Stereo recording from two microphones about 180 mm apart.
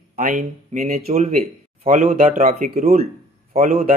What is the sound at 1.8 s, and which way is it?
Speech, 50° right (ahead or behind).